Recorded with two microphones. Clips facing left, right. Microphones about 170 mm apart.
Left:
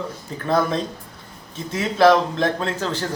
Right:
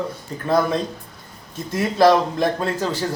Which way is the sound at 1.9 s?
5° right (ahead or behind).